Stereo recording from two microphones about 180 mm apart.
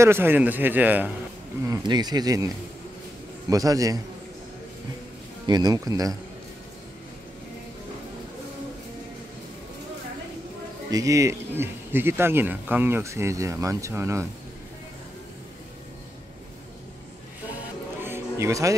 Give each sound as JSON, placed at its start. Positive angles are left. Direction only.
{"t": 0.0, "sound": "speech", "side_deg": -10}
{"t": 1.7, "sound": "speech", "side_deg": -25}
{"t": 5.5, "sound": "speech", "side_deg": -20}
{"t": 10.9, "sound": "speech", "side_deg": -20}
{"t": 18.0, "sound": "music", "side_deg": -15}